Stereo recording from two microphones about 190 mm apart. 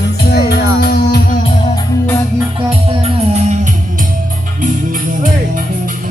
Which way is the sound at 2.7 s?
30° right (ahead or behind).